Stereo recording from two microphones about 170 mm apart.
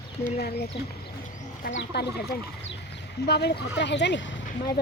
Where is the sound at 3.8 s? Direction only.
90° left.